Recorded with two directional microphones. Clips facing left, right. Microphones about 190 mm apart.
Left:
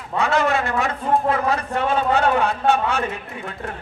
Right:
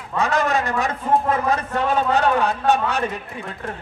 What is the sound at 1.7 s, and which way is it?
A man's voice, 40° right (ahead or behind).